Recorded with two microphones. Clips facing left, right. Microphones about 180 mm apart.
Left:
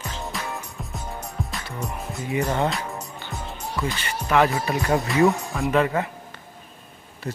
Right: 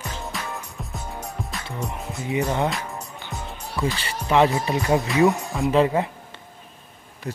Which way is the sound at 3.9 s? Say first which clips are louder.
Right 1 dB; 30° right (ahead or behind).